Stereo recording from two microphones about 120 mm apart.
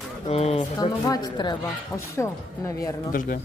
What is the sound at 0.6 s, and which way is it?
Speech, 35° left (ahead or behind).